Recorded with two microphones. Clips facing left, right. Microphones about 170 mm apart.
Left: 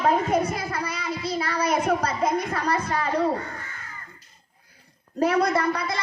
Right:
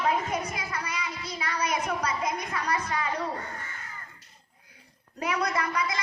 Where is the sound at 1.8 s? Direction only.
50° left (ahead or behind).